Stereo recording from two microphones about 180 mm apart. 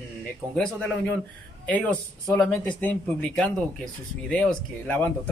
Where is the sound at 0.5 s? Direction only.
5° left (ahead or behind).